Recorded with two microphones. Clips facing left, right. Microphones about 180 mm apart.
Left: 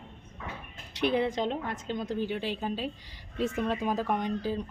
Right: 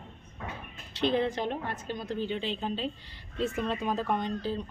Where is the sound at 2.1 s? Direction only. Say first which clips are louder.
Right 1 dB; 10° left (ahead or behind).